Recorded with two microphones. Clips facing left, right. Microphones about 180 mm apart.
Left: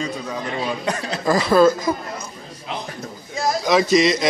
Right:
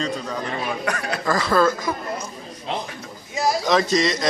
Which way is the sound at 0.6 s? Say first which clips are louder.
Left 4 dB; 25° left (ahead or behind).